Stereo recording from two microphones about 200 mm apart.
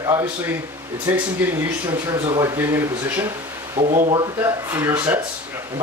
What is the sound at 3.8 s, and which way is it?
Speech, 35° right (ahead or behind).